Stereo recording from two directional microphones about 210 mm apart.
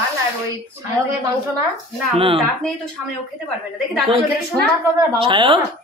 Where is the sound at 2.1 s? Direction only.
25° right (ahead or behind).